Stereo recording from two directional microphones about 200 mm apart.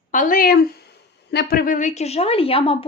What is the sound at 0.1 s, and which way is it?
A woman's voice, 40° left (ahead or behind).